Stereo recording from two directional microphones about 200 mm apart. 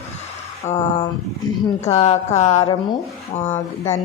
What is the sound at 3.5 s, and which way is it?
Speech, 15° left (ahead or behind).